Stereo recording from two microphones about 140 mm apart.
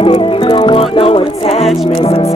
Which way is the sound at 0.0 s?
40° left (ahead or behind).